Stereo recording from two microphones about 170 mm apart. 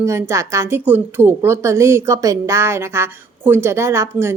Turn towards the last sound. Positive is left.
turn(degrees=-15)  # may be behind; listen again after turning